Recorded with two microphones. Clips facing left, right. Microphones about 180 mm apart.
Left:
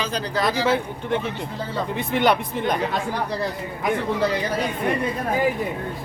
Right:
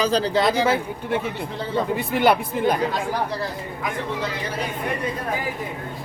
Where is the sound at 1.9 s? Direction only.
5° right (ahead or behind).